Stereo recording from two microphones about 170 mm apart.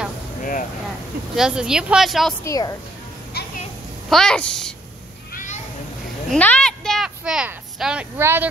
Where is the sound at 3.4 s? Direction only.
70° left (ahead or behind).